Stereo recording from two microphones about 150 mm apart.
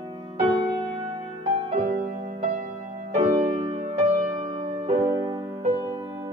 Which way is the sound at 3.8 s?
45° right (ahead or behind).